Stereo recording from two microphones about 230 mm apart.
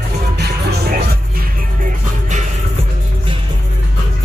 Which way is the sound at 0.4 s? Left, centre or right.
Right.